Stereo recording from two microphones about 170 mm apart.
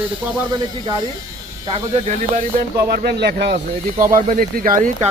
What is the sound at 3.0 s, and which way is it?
Speech, 80° right.